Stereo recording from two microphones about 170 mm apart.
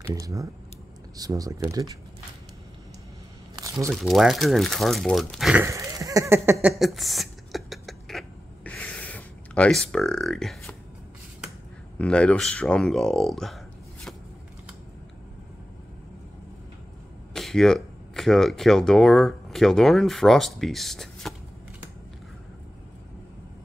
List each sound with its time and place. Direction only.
0.0 s speech: 20° right (ahead or behind)
3.9 s speech: centre (ahead or behind)
5.7 s a sound: 20° right (ahead or behind)
6.8 s a sound: centre (ahead or behind)
12.0 s speech: 5° left (ahead or behind)
17.3 s speech: 5° left (ahead or behind)